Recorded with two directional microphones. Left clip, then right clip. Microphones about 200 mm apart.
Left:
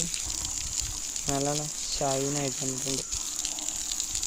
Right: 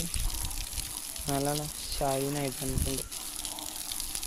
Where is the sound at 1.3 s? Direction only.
Centre (ahead or behind).